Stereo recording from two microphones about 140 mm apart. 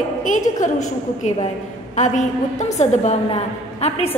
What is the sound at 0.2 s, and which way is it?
Speech, 65° left (ahead or behind).